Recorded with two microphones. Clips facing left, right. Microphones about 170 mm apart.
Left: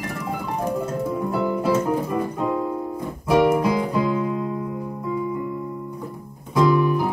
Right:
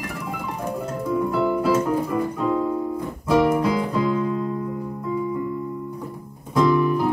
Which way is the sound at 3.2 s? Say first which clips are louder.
Left 1 dB; 15° left (ahead or behind).